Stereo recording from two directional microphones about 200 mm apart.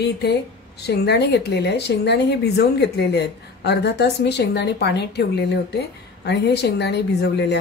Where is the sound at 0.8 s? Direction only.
55° left (ahead or behind).